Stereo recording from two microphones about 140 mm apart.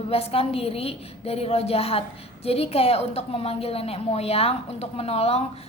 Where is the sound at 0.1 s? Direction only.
45° left (ahead or behind).